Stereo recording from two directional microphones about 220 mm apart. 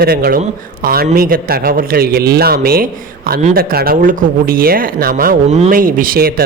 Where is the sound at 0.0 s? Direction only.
45° right (ahead or behind).